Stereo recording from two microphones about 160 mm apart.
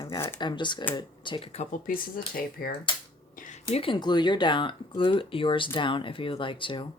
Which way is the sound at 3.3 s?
55° left (ahead or behind).